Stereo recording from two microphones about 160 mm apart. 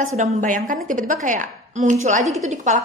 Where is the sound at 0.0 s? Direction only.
50° right (ahead or behind).